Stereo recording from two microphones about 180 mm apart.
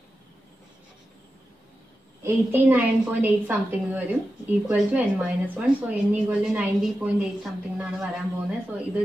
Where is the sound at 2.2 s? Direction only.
10° right (ahead or behind).